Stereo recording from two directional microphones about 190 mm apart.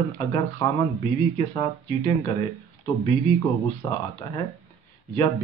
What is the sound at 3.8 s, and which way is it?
Speech, 25° left (ahead or behind).